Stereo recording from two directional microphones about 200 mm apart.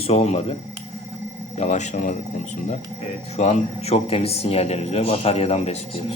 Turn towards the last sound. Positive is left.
turn(degrees=30)  # may be behind; listen again after turning